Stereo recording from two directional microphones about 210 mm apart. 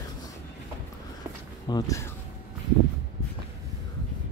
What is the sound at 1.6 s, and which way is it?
Speech, 15° left (ahead or behind).